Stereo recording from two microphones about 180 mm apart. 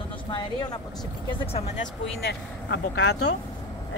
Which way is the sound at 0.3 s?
25° left (ahead or behind).